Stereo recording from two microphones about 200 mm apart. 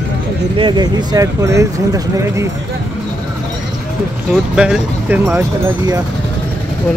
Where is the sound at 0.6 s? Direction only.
20° right (ahead or behind).